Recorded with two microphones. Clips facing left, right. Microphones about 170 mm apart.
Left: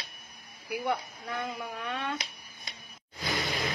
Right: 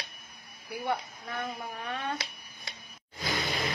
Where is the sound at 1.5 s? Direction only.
65° left (ahead or behind).